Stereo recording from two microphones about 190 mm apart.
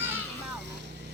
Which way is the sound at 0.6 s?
65° right (ahead or behind).